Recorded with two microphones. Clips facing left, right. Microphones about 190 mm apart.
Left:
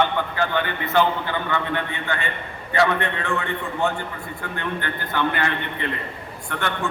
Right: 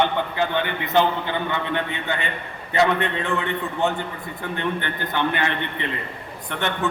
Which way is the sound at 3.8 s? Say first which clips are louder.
Right 1 dB; 20° right (ahead or behind).